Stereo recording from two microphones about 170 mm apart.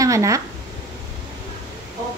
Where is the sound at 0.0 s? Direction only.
20° right (ahead or behind).